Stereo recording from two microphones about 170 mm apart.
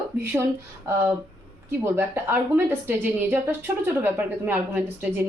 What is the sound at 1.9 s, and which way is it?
Speech, 10° right (ahead or behind).